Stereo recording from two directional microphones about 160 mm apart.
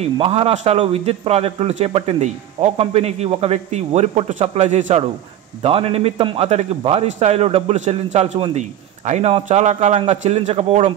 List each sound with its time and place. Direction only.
0.0 s a man's voice: 40° right (ahead or behind)